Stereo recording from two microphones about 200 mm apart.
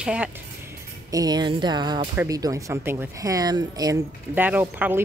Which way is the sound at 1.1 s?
20° right (ahead or behind).